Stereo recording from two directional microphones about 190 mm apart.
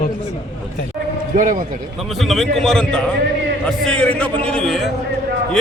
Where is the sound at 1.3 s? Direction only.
45° right (ahead or behind).